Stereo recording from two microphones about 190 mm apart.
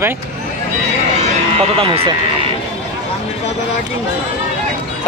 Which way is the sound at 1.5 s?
30° right (ahead or behind).